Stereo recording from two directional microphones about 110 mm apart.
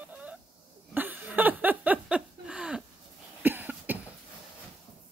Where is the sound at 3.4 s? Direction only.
15° right (ahead or behind).